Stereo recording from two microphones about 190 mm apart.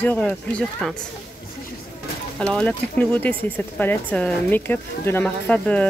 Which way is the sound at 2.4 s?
5° left (ahead or behind).